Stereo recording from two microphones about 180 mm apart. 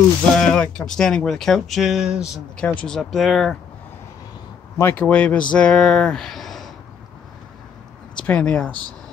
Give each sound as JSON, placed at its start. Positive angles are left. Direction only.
{"t": 0.4, "sound": "speech", "side_deg": 5}
{"t": 4.7, "sound": "speech", "side_deg": 10}
{"t": 8.2, "sound": "speech", "side_deg": 5}